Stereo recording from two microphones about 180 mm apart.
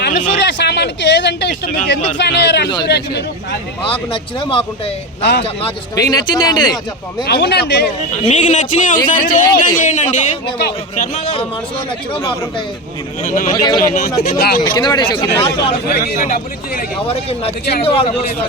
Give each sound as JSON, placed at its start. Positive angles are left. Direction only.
{"t": 0.0, "sound": "a sound", "side_deg": 70}
{"t": 2.8, "sound": "speech", "side_deg": 70}
{"t": 3.8, "sound": "a man's voice", "side_deg": 30}
{"t": 5.2, "sound": "speech", "side_deg": 70}
{"t": 5.9, "sound": "a man's voice", "side_deg": 20}
{"t": 7.3, "sound": "speech", "side_deg": 70}
{"t": 8.3, "sound": "a man's voice", "side_deg": 40}
{"t": 13.2, "sound": "a man's voice", "side_deg": 45}
{"t": 13.5, "sound": "a man's voice", "side_deg": 25}
{"t": 13.7, "sound": "a man's voice", "side_deg": 45}
{"t": 14.3, "sound": "speech", "side_deg": 60}
{"t": 14.6, "sound": "a man's voice", "side_deg": 25}
{"t": 16.0, "sound": "speech", "side_deg": 55}
{"t": 17.1, "sound": "a man's voice", "side_deg": 35}